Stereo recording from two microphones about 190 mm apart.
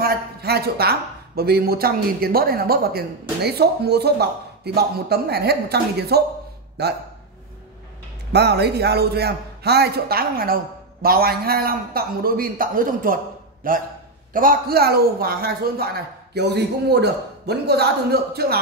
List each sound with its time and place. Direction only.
0.0 s speech: 55° right (ahead or behind)
8.3 s a man's voice: 60° right (ahead or behind)